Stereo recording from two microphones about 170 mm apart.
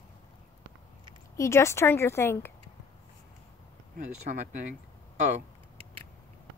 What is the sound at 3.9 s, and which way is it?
Speech, 50° right (ahead or behind).